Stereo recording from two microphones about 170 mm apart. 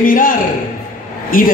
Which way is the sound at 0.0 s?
55° left (ahead or behind).